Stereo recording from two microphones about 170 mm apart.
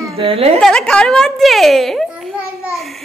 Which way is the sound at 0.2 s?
35° right (ahead or behind).